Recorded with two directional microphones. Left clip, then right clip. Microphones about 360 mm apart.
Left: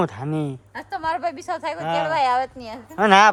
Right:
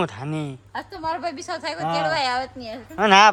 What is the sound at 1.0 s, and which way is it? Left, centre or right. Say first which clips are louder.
A woman's voice: left 3 dB; left.